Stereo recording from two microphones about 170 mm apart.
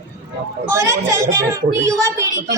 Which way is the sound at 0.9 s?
20° right (ahead or behind).